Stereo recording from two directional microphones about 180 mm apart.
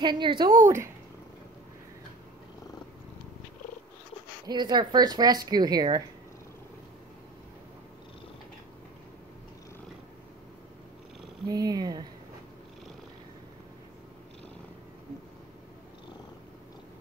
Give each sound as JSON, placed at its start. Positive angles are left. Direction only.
{"t": 0.0, "sound": "speech", "side_deg": -25}
{"t": 0.6, "sound": "speech", "side_deg": -15}
{"t": 4.5, "sound": "speech", "side_deg": -25}
{"t": 11.4, "sound": "speech", "side_deg": -20}